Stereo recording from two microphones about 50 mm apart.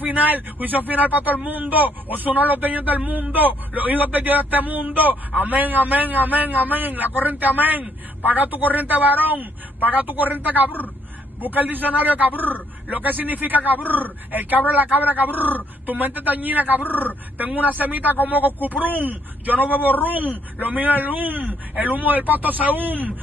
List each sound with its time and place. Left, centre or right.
0.0 s a man's voice: right